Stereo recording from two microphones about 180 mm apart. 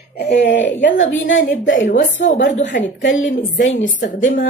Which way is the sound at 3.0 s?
90° left.